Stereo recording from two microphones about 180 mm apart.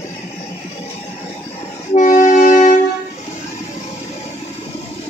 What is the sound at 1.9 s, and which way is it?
Music, 45° left (ahead or behind).